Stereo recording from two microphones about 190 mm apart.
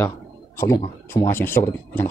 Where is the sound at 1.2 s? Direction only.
10° left (ahead or behind).